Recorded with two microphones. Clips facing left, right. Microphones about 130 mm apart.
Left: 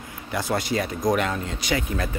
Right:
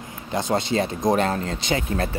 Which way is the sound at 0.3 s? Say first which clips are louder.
Right 2 dB; 20° right (ahead or behind).